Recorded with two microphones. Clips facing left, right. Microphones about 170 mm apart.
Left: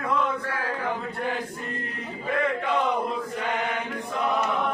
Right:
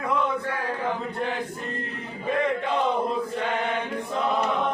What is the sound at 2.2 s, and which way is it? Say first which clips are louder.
Chant: right 1 dB; 20° right (ahead or behind).